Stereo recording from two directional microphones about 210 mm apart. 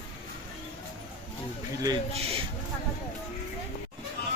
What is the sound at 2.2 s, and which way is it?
Speech, 30° right (ahead or behind).